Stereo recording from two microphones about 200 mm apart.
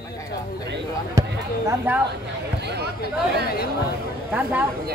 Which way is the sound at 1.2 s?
15° right (ahead or behind).